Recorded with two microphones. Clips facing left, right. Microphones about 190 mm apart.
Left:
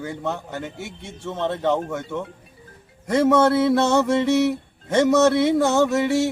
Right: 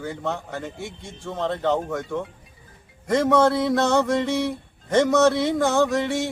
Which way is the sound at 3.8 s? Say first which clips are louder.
Left 1 dB; 25° left (ahead or behind).